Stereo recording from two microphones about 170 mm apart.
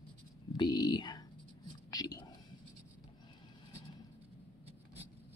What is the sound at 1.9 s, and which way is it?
Whispering, 25° left (ahead or behind).